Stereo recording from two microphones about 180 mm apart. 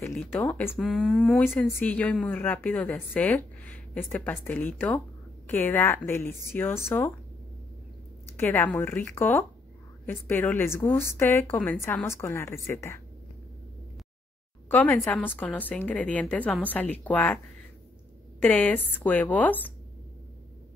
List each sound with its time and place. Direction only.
0.0 s speech: 10° left (ahead or behind)
8.4 s speech: 10° left (ahead or behind)
14.7 s speech: 10° left (ahead or behind)
18.4 s speech: 5° left (ahead or behind)